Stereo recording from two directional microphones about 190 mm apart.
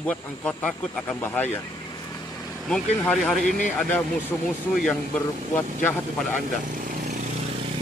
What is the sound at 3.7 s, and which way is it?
Speech, 10° left (ahead or behind).